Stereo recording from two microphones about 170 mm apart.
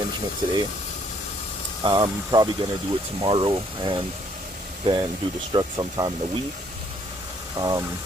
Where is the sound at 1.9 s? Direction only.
25° right (ahead or behind).